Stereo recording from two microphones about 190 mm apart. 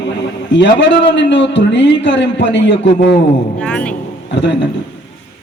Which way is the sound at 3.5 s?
5° left (ahead or behind).